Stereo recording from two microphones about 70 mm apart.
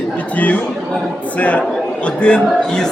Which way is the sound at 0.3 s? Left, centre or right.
Left.